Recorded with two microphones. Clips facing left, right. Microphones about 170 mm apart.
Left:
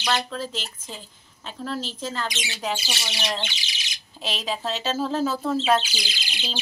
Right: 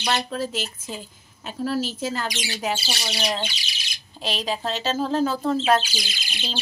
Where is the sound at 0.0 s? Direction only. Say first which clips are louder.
Right 1 dB; 20° right (ahead or behind).